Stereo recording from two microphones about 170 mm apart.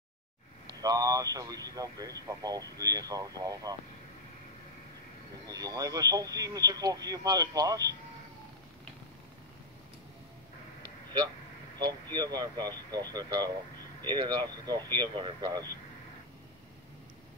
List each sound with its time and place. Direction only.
0.7 s speech: 20° right (ahead or behind)
5.5 s speech: 20° right (ahead or behind)
12.1 s speech: 25° right (ahead or behind)